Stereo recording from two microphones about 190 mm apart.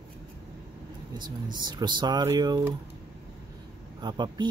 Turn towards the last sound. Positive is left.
turn(degrees=-25)  # may be behind; listen again after turning